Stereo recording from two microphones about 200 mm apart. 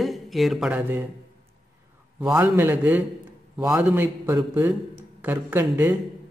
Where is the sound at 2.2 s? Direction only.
5° right (ahead or behind).